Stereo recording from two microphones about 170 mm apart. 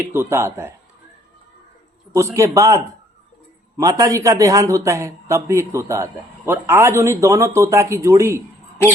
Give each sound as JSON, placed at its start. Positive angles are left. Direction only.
{"t": 0.0, "sound": "a man's voice", "side_deg": -15}
{"t": 2.1, "sound": "a man's voice", "side_deg": -15}